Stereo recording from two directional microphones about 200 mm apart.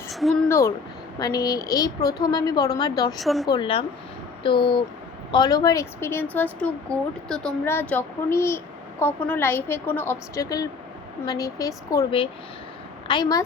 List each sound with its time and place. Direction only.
0.1 s speech: centre (ahead or behind)
0.4 s a woman's voice: 15° left (ahead or behind)
3.2 s speech: centre (ahead or behind)
3.4 s a woman's voice: 20° left (ahead or behind)